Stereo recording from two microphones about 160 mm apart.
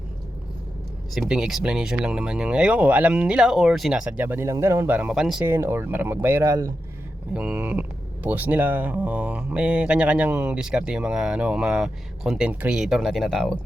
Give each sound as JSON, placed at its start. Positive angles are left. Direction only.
{"t": 1.1, "sound": "speech", "side_deg": 0}
{"t": 5.5, "sound": "speech", "side_deg": -15}
{"t": 7.3, "sound": "speech", "side_deg": -10}